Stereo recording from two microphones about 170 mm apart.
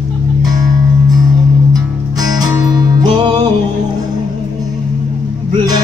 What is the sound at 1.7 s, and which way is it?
Music, 20° right (ahead or behind).